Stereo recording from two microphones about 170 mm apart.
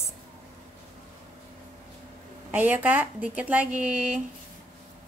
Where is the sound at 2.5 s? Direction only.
10° right (ahead or behind).